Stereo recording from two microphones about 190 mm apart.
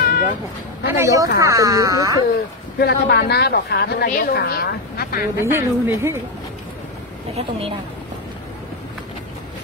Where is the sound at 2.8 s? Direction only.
55° left (ahead or behind).